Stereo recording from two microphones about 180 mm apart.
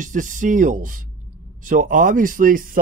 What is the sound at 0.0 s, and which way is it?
Speech, 45° right (ahead or behind).